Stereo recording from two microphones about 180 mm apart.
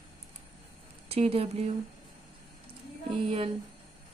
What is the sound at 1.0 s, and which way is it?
Speech, 35° right (ahead or behind).